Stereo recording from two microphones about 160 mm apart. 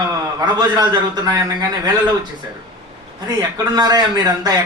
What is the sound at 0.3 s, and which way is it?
A man's voice, 25° right (ahead or behind).